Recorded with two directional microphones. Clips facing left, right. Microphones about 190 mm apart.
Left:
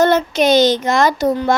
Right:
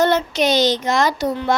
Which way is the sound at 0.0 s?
50° left (ahead or behind).